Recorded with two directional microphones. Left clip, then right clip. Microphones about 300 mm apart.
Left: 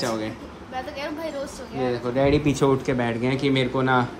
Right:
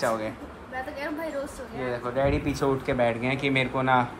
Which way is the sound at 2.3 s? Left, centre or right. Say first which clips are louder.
Left 6 dB; left.